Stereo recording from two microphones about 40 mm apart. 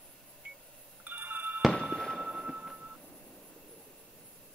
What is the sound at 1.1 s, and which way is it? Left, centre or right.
Music, right.